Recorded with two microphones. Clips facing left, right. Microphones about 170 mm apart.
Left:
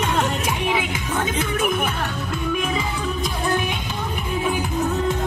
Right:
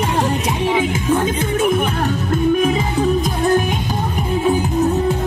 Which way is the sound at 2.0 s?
40° right (ahead or behind).